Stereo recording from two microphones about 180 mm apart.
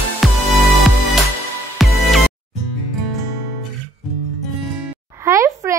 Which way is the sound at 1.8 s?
Centre (ahead or behind).